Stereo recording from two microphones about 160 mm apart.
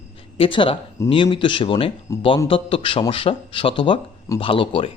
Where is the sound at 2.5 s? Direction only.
35° left (ahead or behind).